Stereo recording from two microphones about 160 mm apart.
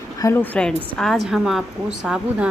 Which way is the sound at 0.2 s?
15° left (ahead or behind).